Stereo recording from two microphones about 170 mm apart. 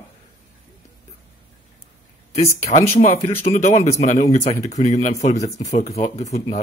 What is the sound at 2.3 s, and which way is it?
A man's voice, 40° left (ahead or behind).